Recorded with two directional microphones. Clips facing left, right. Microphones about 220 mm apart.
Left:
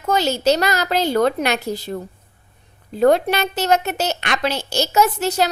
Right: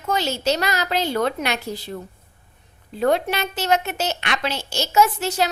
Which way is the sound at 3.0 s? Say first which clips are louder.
Left 5 dB; 40° left (ahead or behind).